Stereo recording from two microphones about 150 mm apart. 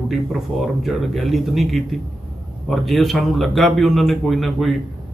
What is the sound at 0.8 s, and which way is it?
Speech, centre (ahead or behind).